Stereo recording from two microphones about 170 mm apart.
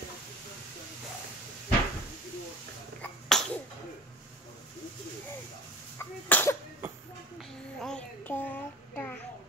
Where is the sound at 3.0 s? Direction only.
5° left (ahead or behind).